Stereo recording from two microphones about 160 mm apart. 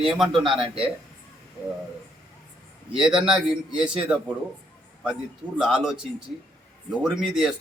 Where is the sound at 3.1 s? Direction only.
5° right (ahead or behind).